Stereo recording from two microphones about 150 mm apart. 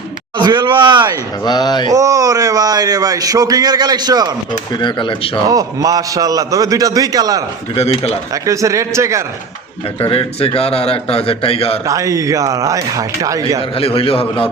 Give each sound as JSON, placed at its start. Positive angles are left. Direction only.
{"t": 0.3, "sound": "speech", "side_deg": -30}
{"t": 1.5, "sound": "a sound", "side_deg": 25}
{"t": 1.9, "sound": "speech", "side_deg": -25}
{"t": 4.7, "sound": "speech", "side_deg": 30}
{"t": 5.5, "sound": "speech", "side_deg": -25}
{"t": 10.0, "sound": "speech", "side_deg": 40}
{"t": 11.9, "sound": "speech", "side_deg": -20}
{"t": 13.6, "sound": "speech", "side_deg": 40}